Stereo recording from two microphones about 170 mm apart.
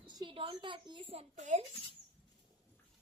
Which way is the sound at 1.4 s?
45° right (ahead or behind).